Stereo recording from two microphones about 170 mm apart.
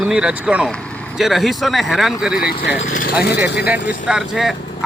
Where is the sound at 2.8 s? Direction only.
50° left (ahead or behind).